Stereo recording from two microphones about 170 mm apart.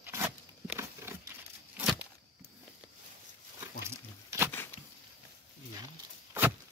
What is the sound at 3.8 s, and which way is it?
Pig, 15° right (ahead or behind).